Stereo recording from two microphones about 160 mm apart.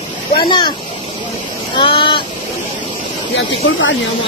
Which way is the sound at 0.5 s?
30° left (ahead or behind).